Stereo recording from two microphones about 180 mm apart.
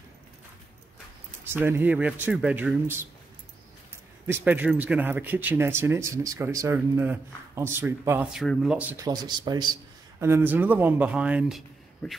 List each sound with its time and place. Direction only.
1.4 s speech: 10° right (ahead or behind)
4.3 s speech: 10° right (ahead or behind)
9.0 s speech: 25° right (ahead or behind)
10.2 s speech: 10° right (ahead or behind)